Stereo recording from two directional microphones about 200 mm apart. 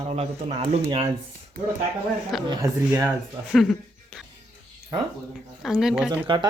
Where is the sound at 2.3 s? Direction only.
Centre (ahead or behind).